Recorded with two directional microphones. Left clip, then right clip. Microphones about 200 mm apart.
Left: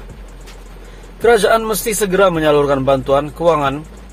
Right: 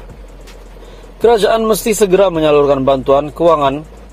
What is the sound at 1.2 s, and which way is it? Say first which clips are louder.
Speech: right 1 dB; 15° right (ahead or behind).